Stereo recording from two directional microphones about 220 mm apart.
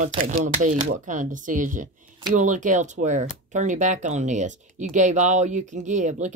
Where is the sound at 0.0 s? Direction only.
35° right (ahead or behind).